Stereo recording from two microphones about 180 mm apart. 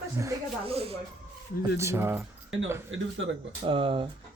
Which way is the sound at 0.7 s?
35° right (ahead or behind).